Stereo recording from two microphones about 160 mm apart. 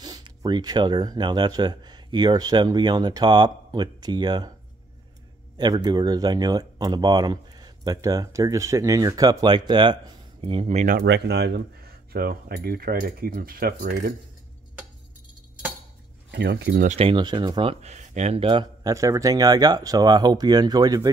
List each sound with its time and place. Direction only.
0.0 s speech: 25° right (ahead or behind)
5.6 s speech: 25° right (ahead or behind); by 11.0 s 45° right (ahead or behind)
11.0 s speech: 90° right
12.1 s speech: 70° right (ahead or behind)
16.3 s speech: 90° right
16.8 s speech: 45° right (ahead or behind)
17.1 s speech: 25° right (ahead or behind)
17.9 s speech: 45° right (ahead or behind); by 21.1 s 25° right (ahead or behind)